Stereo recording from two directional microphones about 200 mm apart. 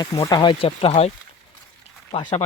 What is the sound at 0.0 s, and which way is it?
Speech, 20° left (ahead or behind).